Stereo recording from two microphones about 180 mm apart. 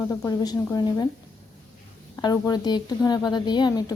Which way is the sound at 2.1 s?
20° left (ahead or behind).